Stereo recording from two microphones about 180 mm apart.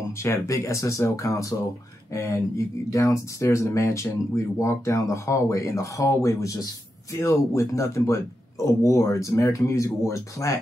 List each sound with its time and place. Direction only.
0.2 s speech: 15° left (ahead or behind)